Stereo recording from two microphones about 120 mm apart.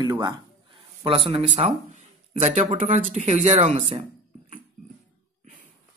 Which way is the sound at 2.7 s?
90° right.